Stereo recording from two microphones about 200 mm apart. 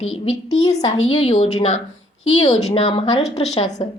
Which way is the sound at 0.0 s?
35° left (ahead or behind).